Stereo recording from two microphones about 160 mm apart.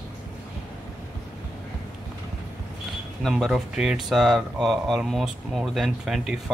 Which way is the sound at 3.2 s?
Centre (ahead or behind).